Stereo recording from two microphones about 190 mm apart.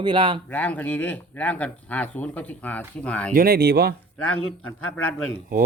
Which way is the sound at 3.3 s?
50° right (ahead or behind).